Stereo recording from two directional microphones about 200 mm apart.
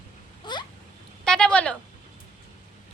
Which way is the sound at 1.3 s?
5° left (ahead or behind).